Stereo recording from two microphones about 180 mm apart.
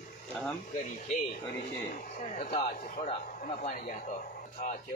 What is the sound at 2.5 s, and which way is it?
A man's voice, 40° left (ahead or behind).